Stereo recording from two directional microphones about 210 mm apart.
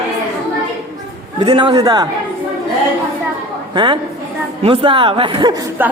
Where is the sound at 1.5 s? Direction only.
20° right (ahead or behind).